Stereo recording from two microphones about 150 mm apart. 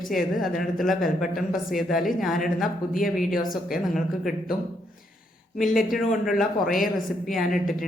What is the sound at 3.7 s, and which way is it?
Speech, centre (ahead or behind).